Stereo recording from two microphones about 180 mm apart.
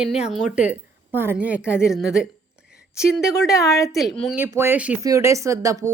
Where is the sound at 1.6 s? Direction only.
15° left (ahead or behind).